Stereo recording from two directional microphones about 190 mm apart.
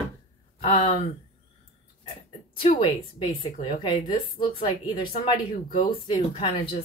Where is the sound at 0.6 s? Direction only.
30° left (ahead or behind).